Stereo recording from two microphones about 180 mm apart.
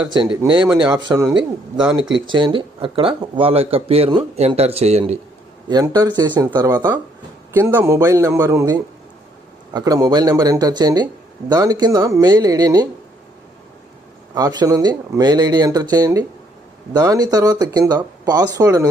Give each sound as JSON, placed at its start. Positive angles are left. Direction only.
{"t": 0.1, "sound": "speech", "side_deg": -25}
{"t": 5.6, "sound": "speech", "side_deg": -20}
{"t": 7.5, "sound": "a man's voice", "side_deg": -10}
{"t": 14.3, "sound": "speech", "side_deg": -20}